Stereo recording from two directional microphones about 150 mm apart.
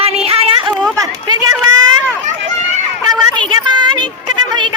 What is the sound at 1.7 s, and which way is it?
Run, 30° right (ahead or behind).